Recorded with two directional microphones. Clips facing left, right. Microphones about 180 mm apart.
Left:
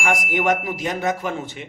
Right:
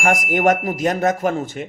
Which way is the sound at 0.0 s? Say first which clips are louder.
Right 4 dB; 45° right (ahead or behind).